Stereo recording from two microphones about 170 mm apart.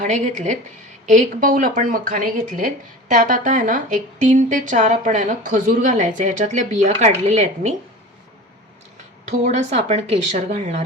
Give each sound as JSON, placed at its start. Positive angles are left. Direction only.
{"t": 0.0, "sound": "speech", "side_deg": -45}
{"t": 9.2, "sound": "speech", "side_deg": -45}